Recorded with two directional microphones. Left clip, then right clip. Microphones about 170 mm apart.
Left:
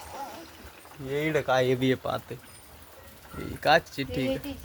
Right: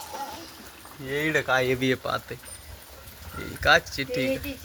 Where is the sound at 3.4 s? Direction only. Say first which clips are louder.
Right 2 dB; 25° left (ahead or behind).